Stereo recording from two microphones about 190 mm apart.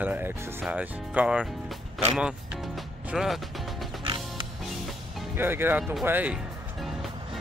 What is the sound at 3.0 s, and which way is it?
Mechanisms, centre (ahead or behind).